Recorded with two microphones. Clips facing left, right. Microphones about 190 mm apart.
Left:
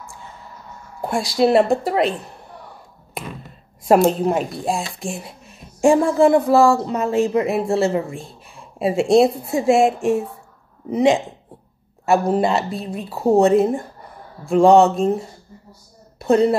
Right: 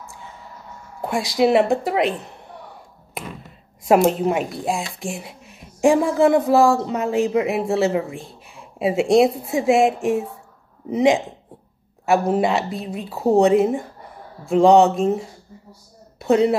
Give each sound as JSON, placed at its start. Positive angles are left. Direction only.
{"t": 1.1, "sound": "speech", "side_deg": -15}
{"t": 3.8, "sound": "speech", "side_deg": -10}
{"t": 12.4, "sound": "speech", "side_deg": -15}
{"t": 16.3, "sound": "speech", "side_deg": -10}